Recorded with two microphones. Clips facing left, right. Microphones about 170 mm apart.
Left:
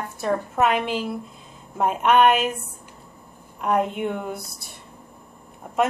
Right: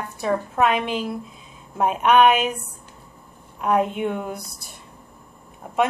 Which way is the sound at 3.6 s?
Centre (ahead or behind).